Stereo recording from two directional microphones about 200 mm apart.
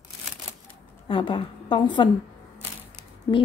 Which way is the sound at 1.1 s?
25° left (ahead or behind).